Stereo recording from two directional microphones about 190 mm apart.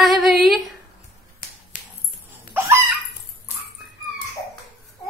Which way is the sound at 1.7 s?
40° left (ahead or behind).